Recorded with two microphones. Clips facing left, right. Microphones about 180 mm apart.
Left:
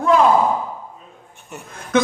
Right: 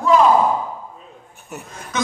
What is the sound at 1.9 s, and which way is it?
Speech, 55° left (ahead or behind).